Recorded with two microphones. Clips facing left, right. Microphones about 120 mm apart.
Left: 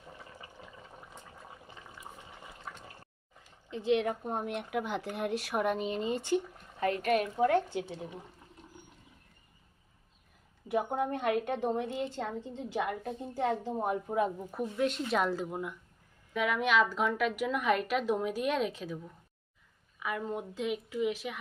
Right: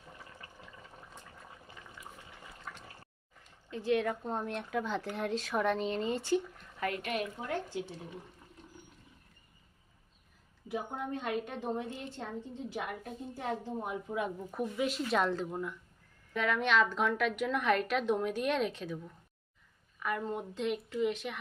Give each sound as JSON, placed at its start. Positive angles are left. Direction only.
{"t": 0.6, "sound": "water", "side_deg": 15}
{"t": 2.5, "sound": "liquid", "side_deg": 15}
{"t": 3.7, "sound": "speech", "side_deg": 20}
{"t": 6.6, "sound": "a sound", "side_deg": 35}
{"t": 7.3, "sound": "a woman's voice", "side_deg": 75}
{"t": 10.7, "sound": "a woman's voice", "side_deg": 60}
{"t": 12.7, "sound": "a woman's voice", "side_deg": 90}
{"t": 13.7, "sound": "a woman's voice", "side_deg": 55}
{"t": 14.1, "sound": "speech", "side_deg": 35}
{"t": 14.3, "sound": "a woman's voice", "side_deg": 0}